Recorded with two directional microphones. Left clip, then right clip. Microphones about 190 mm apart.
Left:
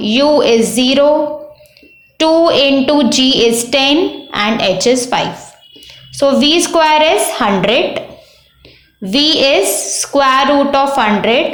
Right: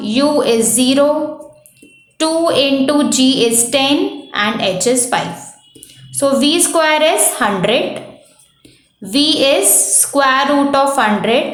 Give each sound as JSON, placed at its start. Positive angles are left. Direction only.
{"t": 0.0, "sound": "a woman's voice", "side_deg": 15}
{"t": 2.1, "sound": "a woman's voice", "side_deg": 15}
{"t": 9.0, "sound": "a woman's voice", "side_deg": 15}